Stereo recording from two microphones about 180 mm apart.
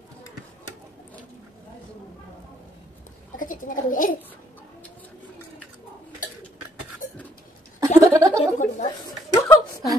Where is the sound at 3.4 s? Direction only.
50° left (ahead or behind).